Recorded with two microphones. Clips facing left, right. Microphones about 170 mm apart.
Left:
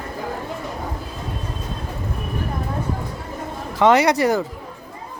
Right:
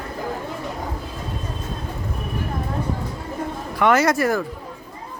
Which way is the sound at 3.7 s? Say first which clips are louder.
Left 2 dB; 20° left (ahead or behind).